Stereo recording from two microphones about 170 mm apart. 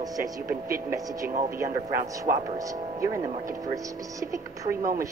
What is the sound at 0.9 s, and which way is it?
Speech, 20° right (ahead or behind).